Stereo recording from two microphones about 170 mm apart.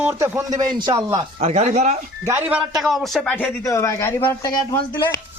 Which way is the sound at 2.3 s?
10° right (ahead or behind).